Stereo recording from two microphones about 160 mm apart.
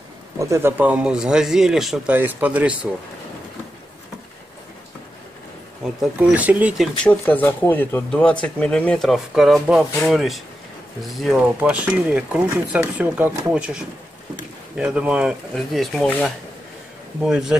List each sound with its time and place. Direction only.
0.4 s speech: 15° right (ahead or behind)
5.9 s speech: 10° right (ahead or behind)
7.0 s speech: 10° left (ahead or behind)